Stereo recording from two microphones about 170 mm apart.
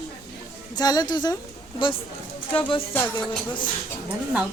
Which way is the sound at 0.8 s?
25° left (ahead or behind).